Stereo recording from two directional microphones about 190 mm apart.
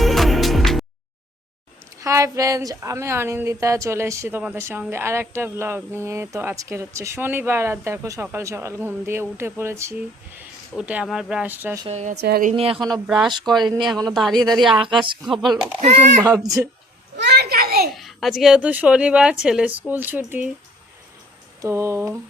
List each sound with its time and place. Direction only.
0.0 s music: centre (ahead or behind)
2.0 s speech: 15° right (ahead or behind)
11.9 s speech: 35° right (ahead or behind)
12.1 s speech: 55° right (ahead or behind)
12.5 s speech: 30° right (ahead or behind)
12.8 s speech: centre (ahead or behind)
14.7 s a woman's voice: 25° right (ahead or behind)
15.8 s speech: 40° right (ahead or behind)
16.2 s speech: 20° right (ahead or behind)
17.2 s a sound: 60° right (ahead or behind)
17.9 s speech: centre (ahead or behind)
21.6 s speech: 15° right (ahead or behind)